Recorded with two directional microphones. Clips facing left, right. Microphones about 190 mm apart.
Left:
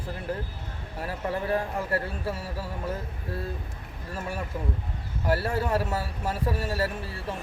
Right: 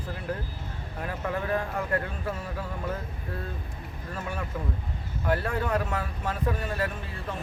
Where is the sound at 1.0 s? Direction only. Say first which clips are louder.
Left 1 dB; 35° left (ahead or behind).